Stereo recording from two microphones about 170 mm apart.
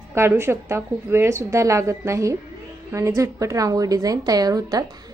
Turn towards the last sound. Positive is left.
turn(degrees=-20)  # may be behind; listen again after turning